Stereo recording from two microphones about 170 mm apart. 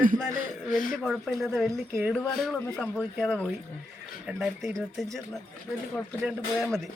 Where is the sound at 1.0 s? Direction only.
Centre (ahead or behind).